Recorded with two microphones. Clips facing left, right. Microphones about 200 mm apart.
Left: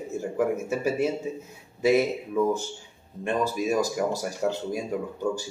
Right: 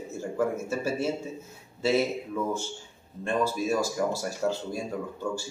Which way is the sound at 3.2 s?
15° left (ahead or behind).